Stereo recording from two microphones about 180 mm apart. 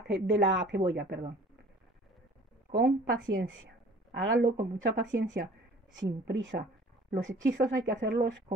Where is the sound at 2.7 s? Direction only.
65° right (ahead or behind).